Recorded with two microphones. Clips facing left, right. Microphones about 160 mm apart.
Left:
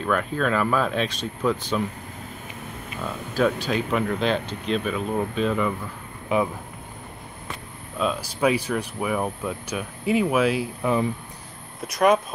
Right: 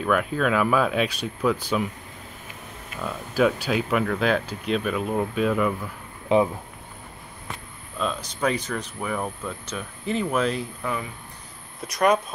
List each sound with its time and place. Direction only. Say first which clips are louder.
0.0 s speech: right 1 dB; 5° right (ahead or behind)
3.0 s speech: right 1 dB; 5° right (ahead or behind)
6.2 s speech: right 3 dB; 25° right (ahead or behind)
8.0 s speech: left 3 dB; 5° left (ahead or behind)
10.8 s speech: left 7 dB; 25° left (ahead or behind)
11.9 s speech: left 2 dB; centre (ahead or behind)